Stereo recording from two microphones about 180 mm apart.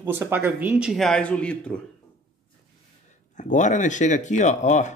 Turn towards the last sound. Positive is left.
turn(degrees=40)  # may be behind; listen again after turning